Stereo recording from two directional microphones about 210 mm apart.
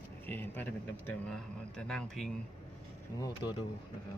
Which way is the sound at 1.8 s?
5° left (ahead or behind).